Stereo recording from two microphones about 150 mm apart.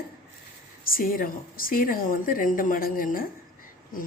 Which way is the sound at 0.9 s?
75° left (ahead or behind).